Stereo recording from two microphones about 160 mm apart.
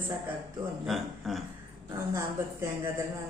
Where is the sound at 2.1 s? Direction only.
15° right (ahead or behind).